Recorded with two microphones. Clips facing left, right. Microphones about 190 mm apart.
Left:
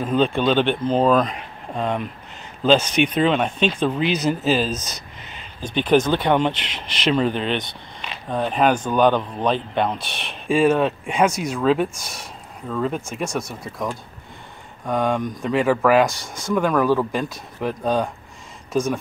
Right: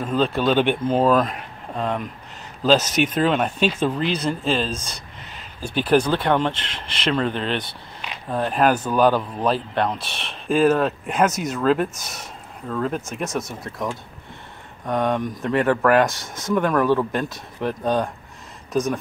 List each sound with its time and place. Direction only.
0.0 s speech: centre (ahead or behind)
3.2 s speech: centre (ahead or behind)
4.7 s speech: 30° right (ahead or behind)
5.3 s a sound: 5° right (ahead or behind)
6.0 s speech: 5° left (ahead or behind)